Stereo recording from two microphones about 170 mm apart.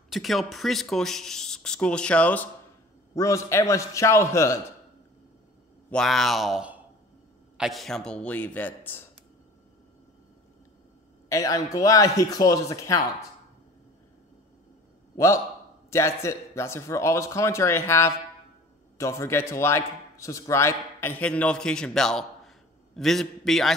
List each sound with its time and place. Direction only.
0.1 s a man's voice: centre (ahead or behind); by 4.6 s 15° left (ahead or behind)
5.9 s a man's voice: 5° left (ahead or behind)
11.2 s a man's voice: 20° left (ahead or behind)
15.1 s a man's voice: 20° left (ahead or behind); by 23.7 s centre (ahead or behind)